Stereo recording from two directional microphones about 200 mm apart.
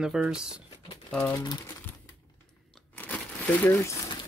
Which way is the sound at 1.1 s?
15° left (ahead or behind).